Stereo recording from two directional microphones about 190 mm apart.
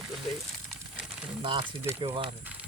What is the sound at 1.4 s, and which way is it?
Speech, 25° right (ahead or behind).